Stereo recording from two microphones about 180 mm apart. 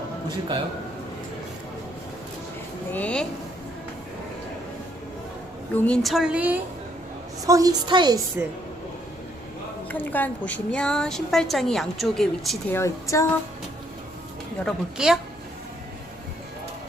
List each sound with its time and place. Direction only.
2.9 s a sound: 5° left (ahead or behind)
5.7 s a woman's voice: 5° left (ahead or behind)
7.4 s a woman's voice: 20° right (ahead or behind)
9.9 s a woman's voice: 10° left (ahead or behind)
12.8 s a sound: 15° left (ahead or behind)
14.6 s a woman's voice: 5° right (ahead or behind)